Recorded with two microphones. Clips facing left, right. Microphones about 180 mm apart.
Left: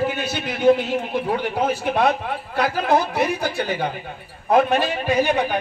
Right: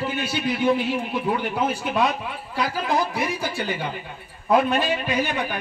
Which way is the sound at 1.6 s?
60° left (ahead or behind).